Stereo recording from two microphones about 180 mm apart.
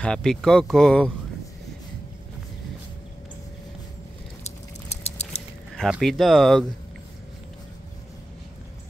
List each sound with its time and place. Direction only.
0.0 s speech: 5° left (ahead or behind)
4.5 s a sound: 35° left (ahead or behind)
5.8 s speech: centre (ahead or behind)